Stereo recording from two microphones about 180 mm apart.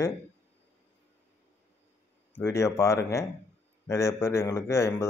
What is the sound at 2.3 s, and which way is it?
Speech, 15° left (ahead or behind).